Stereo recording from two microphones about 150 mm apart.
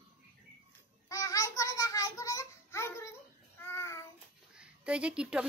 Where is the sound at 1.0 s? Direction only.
20° left (ahead or behind).